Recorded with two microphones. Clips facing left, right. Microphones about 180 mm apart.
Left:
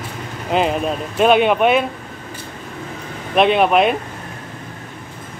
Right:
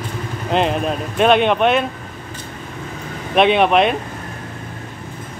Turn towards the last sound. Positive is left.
turn(degrees=5)  # may be behind; listen again after turning